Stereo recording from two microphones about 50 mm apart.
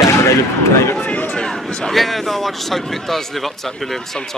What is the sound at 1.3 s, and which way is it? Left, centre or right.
A man's voice, centre.